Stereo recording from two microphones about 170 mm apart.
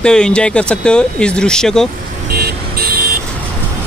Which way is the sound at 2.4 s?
60° right (ahead or behind).